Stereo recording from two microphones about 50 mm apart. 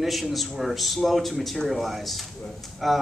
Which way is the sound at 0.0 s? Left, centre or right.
Centre.